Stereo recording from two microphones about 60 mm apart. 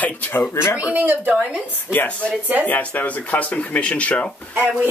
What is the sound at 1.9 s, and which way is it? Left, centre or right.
Speech, left.